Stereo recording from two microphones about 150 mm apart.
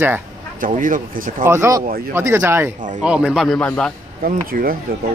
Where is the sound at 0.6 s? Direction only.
65° right (ahead or behind).